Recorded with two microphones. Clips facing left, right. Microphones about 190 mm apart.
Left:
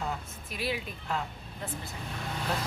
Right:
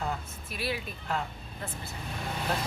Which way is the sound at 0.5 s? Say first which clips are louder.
Even; 15° left (ahead or behind).